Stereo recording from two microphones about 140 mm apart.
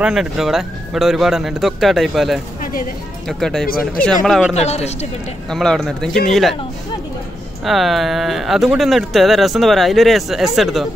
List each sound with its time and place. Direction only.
0.0 s speech: 5° right (ahead or behind)
4.6 s speech: 50° left (ahead or behind)
5.5 s speech: 5° left (ahead or behind)
7.6 s speech: centre (ahead or behind)